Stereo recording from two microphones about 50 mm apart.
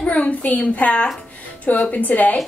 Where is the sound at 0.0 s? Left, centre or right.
Left.